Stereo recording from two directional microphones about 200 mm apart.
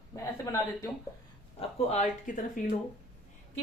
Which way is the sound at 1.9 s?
40° left (ahead or behind).